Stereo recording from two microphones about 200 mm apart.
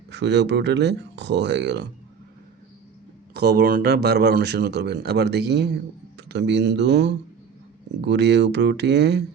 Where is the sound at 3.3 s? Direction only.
50° right (ahead or behind).